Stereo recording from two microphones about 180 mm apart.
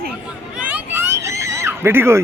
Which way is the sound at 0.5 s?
10° right (ahead or behind).